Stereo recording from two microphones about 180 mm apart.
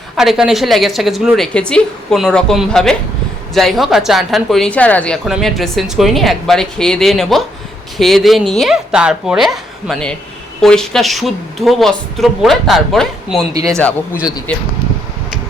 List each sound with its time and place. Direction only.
0.2 s a woman's voice: 5° right (ahead or behind)
13.5 s speech: 20° right (ahead or behind)